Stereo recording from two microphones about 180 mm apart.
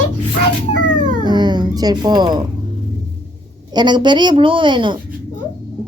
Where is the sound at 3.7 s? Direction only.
25° right (ahead or behind).